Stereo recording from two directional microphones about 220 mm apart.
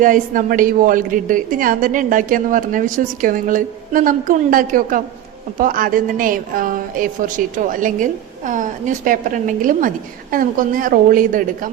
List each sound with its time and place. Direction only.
0.0 s a woman's voice: 40° right (ahead or behind)